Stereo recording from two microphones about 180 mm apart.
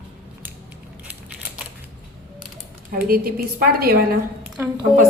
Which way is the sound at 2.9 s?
55° right (ahead or behind).